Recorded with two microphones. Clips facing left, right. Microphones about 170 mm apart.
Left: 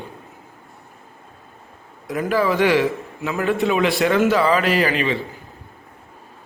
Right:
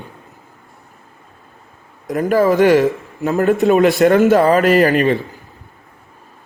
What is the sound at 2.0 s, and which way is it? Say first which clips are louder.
A man's voice: right 6 dB; 45° right (ahead or behind).